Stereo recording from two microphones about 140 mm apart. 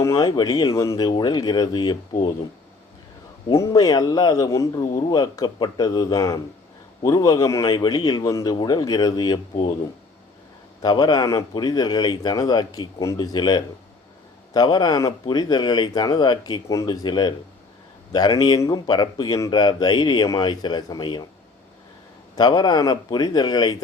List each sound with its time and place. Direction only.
0.0 s a man's voice: 25° left (ahead or behind)
3.5 s a man's voice: 25° left (ahead or behind)
10.8 s speech: 30° left (ahead or behind)
22.4 s speech: 30° left (ahead or behind)